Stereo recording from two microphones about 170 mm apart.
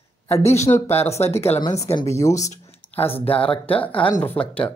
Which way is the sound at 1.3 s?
15° left (ahead or behind).